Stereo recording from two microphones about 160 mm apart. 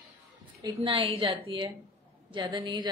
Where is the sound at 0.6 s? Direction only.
30° right (ahead or behind).